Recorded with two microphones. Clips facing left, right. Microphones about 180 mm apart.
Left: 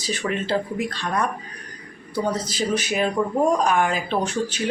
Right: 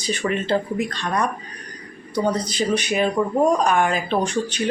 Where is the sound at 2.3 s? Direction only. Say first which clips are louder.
Right 2 dB; 5° left (ahead or behind).